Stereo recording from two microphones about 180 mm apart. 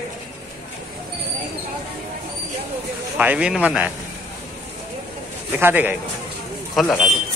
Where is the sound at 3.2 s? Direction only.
5° right (ahead or behind).